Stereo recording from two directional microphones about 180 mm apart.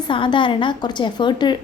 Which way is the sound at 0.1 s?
25° left (ahead or behind).